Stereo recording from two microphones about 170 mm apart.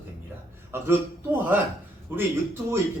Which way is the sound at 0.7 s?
10° right (ahead or behind).